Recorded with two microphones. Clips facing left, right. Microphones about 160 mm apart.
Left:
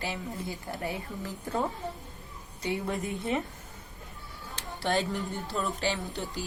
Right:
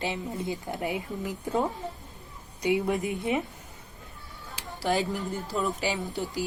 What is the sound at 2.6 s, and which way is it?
Speech, 15° right (ahead or behind).